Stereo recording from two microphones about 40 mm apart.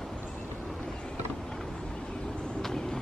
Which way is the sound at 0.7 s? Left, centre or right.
Centre.